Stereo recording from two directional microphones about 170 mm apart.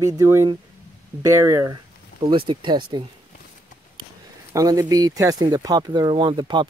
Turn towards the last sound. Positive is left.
turn(degrees=-25)  # may be behind; listen again after turning